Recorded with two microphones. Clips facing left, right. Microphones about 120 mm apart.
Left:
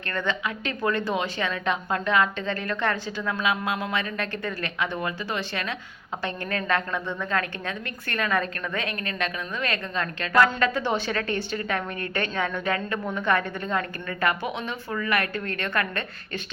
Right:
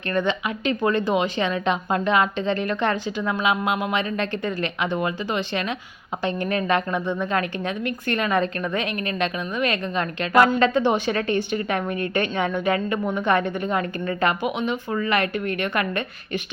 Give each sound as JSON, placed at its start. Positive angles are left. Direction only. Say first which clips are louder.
{"t": 0.1, "sound": "a woman's voice", "louder": "right 5 dB", "side_deg": -20}